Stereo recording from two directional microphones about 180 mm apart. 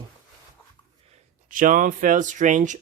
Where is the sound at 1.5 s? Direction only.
50° right (ahead or behind).